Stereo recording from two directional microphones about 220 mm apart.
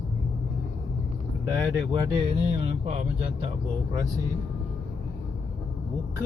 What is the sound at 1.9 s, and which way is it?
Speech, 25° right (ahead or behind).